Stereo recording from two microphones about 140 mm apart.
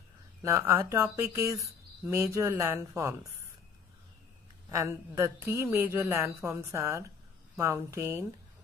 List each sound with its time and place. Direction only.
0.4 s speech: 20° right (ahead or behind)
4.6 s speech: 20° right (ahead or behind)